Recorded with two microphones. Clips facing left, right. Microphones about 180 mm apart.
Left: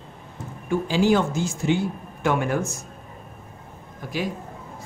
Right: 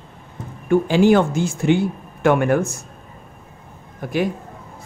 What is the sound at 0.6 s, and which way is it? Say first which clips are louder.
Speech: right 6 dB; 60° right (ahead or behind).